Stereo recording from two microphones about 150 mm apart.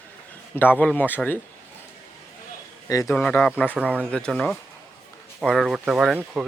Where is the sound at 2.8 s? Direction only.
25° left (ahead or behind).